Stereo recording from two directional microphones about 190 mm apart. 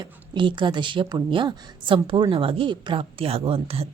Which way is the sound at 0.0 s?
25° right (ahead or behind).